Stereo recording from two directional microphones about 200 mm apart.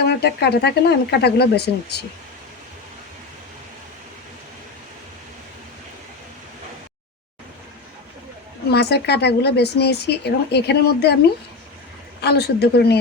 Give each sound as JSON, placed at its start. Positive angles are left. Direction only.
{"t": 0.0, "sound": "speech", "side_deg": 55}
{"t": 8.7, "sound": "speech", "side_deg": 55}
{"t": 12.2, "sound": "speech", "side_deg": 55}